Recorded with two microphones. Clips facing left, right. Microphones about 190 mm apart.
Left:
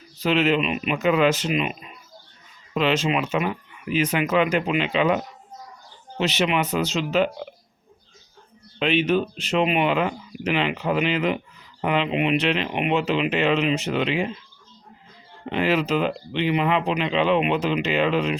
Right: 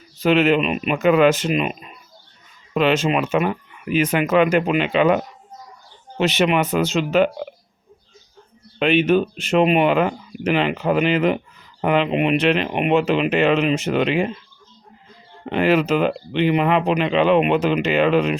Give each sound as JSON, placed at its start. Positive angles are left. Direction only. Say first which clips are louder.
{"t": 0.2, "sound": "speech", "louder": "right 4 dB", "side_deg": -55}
{"t": 8.8, "sound": "speech", "louder": "right 4 dB", "side_deg": -55}
{"t": 15.4, "sound": "speech", "louder": "right 4 dB", "side_deg": -50}